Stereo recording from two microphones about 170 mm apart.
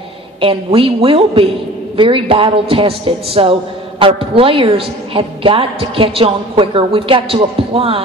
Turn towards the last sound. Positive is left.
turn(degrees=-35)  # may be behind; listen again after turning